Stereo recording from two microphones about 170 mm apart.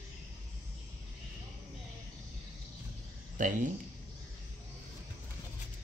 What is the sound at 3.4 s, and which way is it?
Speech, 55° right (ahead or behind).